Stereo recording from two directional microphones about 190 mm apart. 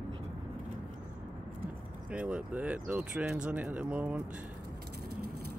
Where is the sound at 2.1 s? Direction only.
5° right (ahead or behind).